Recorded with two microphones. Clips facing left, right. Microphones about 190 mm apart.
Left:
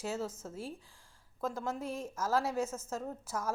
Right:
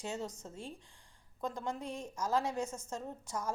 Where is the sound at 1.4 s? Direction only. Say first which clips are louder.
Left 2 dB; 5° left (ahead or behind).